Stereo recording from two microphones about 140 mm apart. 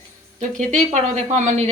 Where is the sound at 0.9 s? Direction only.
55° right (ahead or behind).